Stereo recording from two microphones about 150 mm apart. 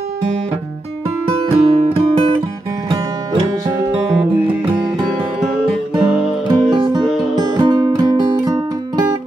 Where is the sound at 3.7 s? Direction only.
30° right (ahead or behind).